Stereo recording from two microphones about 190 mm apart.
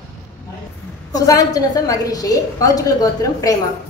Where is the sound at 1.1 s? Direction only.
20° left (ahead or behind).